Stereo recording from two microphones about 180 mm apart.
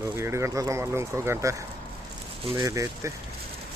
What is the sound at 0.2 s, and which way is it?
Speech, 15° right (ahead or behind).